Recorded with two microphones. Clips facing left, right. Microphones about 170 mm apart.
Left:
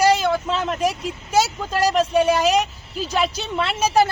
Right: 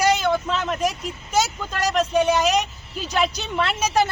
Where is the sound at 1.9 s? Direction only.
5° left (ahead or behind).